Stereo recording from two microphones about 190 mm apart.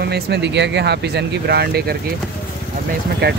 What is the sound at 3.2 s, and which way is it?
Speech, 55° right (ahead or behind).